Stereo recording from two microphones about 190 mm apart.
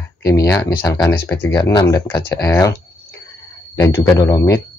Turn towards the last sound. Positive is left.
turn(degrees=20)  # may be behind; listen again after turning